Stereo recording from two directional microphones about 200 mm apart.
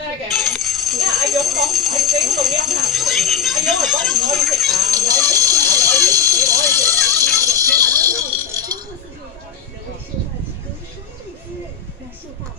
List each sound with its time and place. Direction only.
0.4 s jingle bell: centre (ahead or behind)
4.9 s music: 20° right (ahead or behind)
5.6 s a sound: 20° right (ahead or behind)